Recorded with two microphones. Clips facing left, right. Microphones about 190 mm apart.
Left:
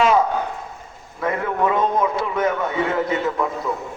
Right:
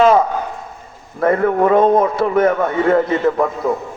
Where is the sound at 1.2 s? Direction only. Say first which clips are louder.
Right 7 dB; 50° right (ahead or behind).